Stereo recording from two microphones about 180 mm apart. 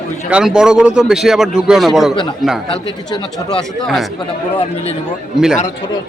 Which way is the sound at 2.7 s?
25° left (ahead or behind).